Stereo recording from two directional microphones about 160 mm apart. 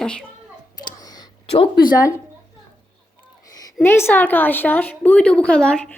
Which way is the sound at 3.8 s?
15° left (ahead or behind).